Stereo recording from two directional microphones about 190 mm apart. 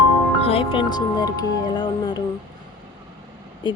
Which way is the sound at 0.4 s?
30° left (ahead or behind).